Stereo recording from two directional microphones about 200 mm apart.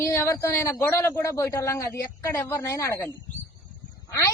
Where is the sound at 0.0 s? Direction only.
10° left (ahead or behind).